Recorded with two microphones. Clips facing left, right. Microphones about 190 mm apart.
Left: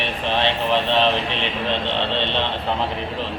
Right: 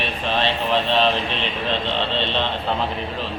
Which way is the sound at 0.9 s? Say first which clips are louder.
Even; 15° left (ahead or behind).